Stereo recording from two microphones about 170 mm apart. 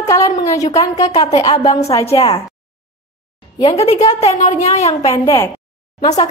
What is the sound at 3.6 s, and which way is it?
Speech, 25° left (ahead or behind).